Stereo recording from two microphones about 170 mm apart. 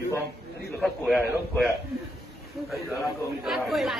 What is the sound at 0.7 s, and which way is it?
Speech, centre (ahead or behind).